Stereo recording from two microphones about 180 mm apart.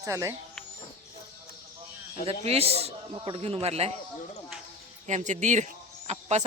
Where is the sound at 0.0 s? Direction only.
15° right (ahead or behind).